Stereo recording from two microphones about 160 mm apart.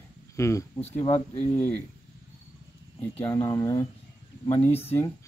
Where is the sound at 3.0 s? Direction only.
10° left (ahead or behind).